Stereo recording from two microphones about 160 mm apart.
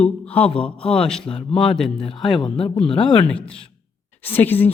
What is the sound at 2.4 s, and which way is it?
Speech, 30° left (ahead or behind).